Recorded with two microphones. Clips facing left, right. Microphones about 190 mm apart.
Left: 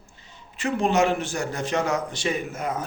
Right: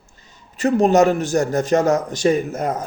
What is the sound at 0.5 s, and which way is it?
A man's voice, 40° right (ahead or behind).